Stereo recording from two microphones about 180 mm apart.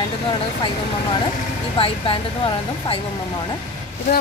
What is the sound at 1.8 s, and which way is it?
Speech, 30° left (ahead or behind).